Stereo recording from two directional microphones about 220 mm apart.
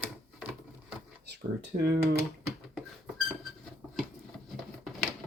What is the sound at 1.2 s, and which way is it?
Speech, 50° right (ahead or behind).